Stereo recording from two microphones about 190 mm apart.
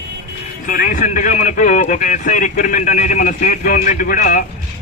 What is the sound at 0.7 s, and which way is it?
Speech, 45° left (ahead or behind).